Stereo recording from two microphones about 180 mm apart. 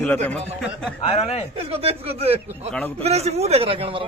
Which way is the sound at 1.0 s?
35° left (ahead or behind).